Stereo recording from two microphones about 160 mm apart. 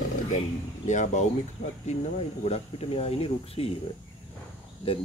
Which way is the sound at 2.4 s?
40° left (ahead or behind).